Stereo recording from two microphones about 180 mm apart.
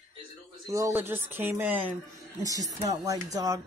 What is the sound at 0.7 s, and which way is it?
Speech, 15° right (ahead or behind).